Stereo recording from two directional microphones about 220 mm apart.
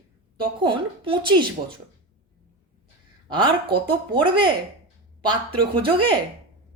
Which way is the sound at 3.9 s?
20° right (ahead or behind).